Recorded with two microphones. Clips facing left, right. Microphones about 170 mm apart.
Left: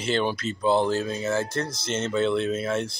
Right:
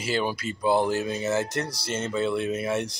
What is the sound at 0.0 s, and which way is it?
Speech, 5° right (ahead or behind).